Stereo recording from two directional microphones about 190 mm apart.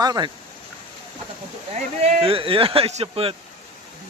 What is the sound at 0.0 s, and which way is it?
Speech, 20° right (ahead or behind).